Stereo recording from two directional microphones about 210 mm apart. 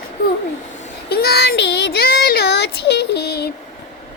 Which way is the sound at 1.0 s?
50° left (ahead or behind).